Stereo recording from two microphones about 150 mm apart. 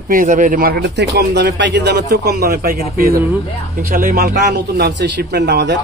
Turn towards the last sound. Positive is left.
turn(degrees=-90)